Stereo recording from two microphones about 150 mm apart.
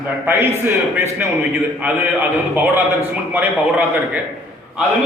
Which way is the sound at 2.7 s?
15° right (ahead or behind).